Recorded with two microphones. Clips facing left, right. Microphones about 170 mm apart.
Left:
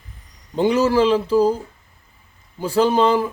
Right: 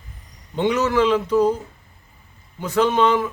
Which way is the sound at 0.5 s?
30° left (ahead or behind).